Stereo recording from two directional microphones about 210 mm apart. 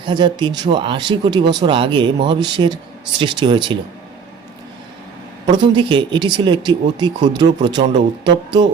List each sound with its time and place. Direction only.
0.0 s speech: 20° right (ahead or behind)
5.5 s speech: 25° right (ahead or behind)